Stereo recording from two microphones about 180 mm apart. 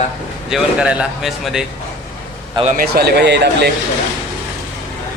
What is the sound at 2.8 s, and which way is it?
Speech, 60° right (ahead or behind).